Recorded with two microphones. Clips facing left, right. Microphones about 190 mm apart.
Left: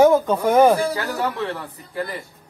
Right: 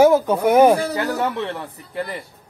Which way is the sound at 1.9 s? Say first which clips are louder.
Even; 25° right (ahead or behind).